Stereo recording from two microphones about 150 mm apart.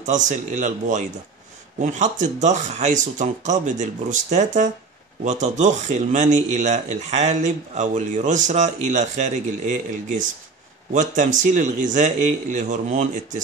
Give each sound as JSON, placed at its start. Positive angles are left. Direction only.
{"t": 0.0, "sound": "a man's voice", "side_deg": -55}